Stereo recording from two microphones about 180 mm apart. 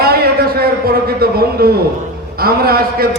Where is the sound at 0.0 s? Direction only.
60° right (ahead or behind).